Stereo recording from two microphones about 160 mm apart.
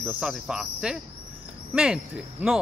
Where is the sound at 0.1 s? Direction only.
5° right (ahead or behind).